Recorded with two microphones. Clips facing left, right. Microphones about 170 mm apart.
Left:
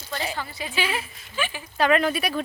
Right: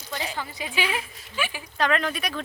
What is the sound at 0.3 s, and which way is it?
Speech, 15° right (ahead or behind).